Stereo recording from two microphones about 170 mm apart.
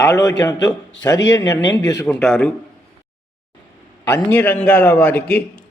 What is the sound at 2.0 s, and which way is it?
Speech, 5° left (ahead or behind).